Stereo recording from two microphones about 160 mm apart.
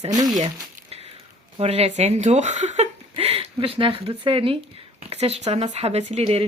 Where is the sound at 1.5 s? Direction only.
40° right (ahead or behind).